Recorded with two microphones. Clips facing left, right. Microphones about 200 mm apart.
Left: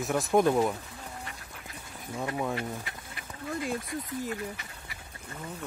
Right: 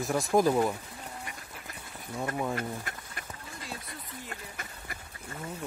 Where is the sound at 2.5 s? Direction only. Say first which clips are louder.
Even; 45° right (ahead or behind).